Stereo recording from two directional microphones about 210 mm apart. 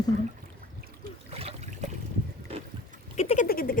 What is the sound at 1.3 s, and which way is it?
Trickle, 30° right (ahead or behind).